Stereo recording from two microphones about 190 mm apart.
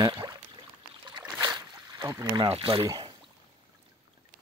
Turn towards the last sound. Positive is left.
turn(degrees=-20)  # may be behind; listen again after turning